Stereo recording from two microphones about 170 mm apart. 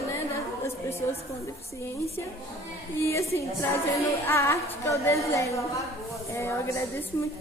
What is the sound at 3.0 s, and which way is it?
Music, 15° left (ahead or behind).